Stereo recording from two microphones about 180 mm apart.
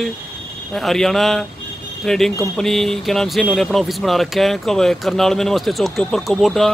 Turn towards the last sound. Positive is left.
turn(degrees=0)  # may be behind; listen again after turning